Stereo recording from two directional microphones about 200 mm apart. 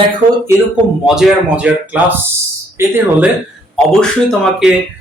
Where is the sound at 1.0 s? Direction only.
Centre (ahead or behind).